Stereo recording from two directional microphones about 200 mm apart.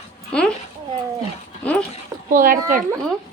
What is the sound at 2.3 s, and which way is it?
Speech, 45° right (ahead or behind).